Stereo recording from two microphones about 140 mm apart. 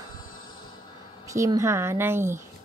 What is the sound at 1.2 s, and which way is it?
Speech, 20° right (ahead or behind).